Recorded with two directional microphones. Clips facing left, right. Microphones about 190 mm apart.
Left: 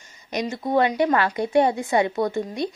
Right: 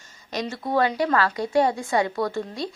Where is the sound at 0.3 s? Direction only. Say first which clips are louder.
Left 2 dB; 20° left (ahead or behind).